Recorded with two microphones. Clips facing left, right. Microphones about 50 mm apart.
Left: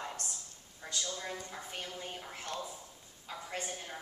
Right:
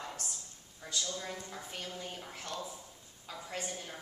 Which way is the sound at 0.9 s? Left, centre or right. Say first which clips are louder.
Even; centre.